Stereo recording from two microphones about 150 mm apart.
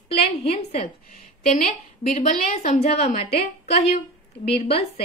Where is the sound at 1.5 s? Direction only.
55° left (ahead or behind).